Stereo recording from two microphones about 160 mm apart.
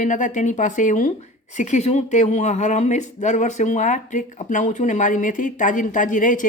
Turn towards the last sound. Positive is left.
turn(degrees=55)  # may be behind; listen again after turning